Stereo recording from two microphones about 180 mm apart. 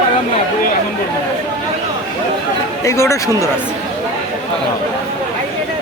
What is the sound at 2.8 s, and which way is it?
Speech, 15° left (ahead or behind).